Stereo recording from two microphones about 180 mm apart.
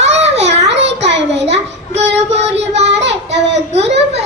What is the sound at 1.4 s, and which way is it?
Child singing, 35° right (ahead or behind).